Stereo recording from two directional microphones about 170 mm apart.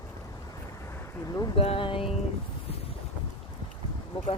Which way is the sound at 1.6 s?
35° left (ahead or behind).